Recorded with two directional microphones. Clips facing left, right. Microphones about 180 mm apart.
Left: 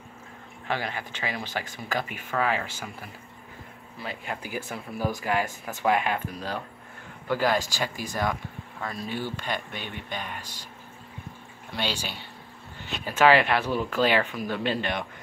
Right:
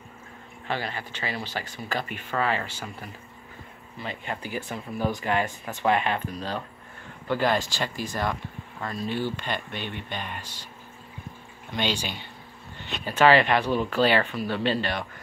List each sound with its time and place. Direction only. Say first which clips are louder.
0.7 s speech: even; 15° left (ahead or behind)
11.7 s speech: right 3 dB; 5° left (ahead or behind)
13.2 s speech: right 1 dB; 10° left (ahead or behind)